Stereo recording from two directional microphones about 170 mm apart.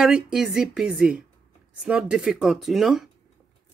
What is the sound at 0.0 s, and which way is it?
Speech, 5° right (ahead or behind).